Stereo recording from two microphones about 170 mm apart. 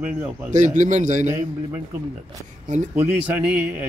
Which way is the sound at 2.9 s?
10° right (ahead or behind).